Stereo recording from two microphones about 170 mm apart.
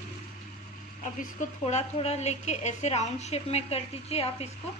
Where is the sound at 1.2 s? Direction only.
40° left (ahead or behind).